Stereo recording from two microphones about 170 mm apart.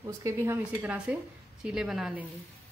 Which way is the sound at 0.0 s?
15° right (ahead or behind).